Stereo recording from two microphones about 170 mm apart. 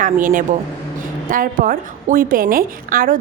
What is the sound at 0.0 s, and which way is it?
A woman's voice, 50° right (ahead or behind).